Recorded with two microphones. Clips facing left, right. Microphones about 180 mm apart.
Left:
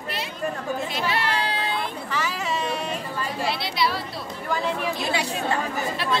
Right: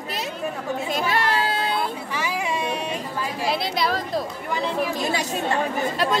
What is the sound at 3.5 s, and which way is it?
Chatter, 45° right (ahead or behind).